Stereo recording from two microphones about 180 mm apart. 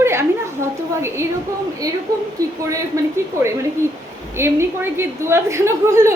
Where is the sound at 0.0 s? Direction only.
15° right (ahead or behind).